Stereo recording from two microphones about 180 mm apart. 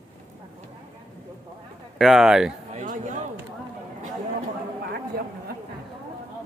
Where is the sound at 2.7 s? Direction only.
45° right (ahead or behind).